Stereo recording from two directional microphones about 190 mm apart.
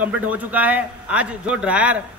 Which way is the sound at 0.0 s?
10° right (ahead or behind).